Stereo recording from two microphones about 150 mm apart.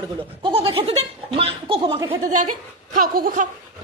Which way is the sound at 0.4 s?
40° right (ahead or behind).